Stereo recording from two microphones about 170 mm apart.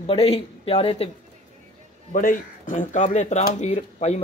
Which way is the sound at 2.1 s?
50° left (ahead or behind).